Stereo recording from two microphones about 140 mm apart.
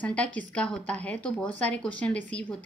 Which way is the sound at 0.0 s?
10° left (ahead or behind).